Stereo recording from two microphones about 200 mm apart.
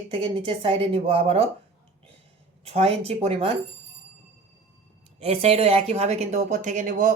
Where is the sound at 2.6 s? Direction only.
30° right (ahead or behind).